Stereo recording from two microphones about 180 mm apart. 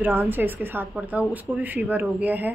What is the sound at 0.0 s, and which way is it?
A woman's voice, 10° right (ahead or behind).